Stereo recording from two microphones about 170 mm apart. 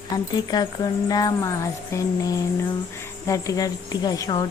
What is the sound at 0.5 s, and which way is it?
Speech, 25° left (ahead or behind).